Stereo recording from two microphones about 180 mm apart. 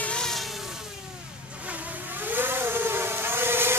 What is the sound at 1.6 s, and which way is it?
Vehicle, 10° right (ahead or behind).